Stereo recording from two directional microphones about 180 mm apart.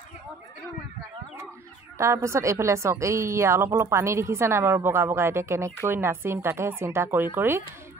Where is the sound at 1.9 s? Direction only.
15° right (ahead or behind).